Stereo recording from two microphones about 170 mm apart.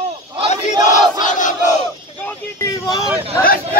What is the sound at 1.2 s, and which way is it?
Crowd, 50° left (ahead or behind).